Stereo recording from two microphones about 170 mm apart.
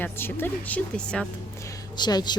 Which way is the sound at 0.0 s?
10° left (ahead or behind).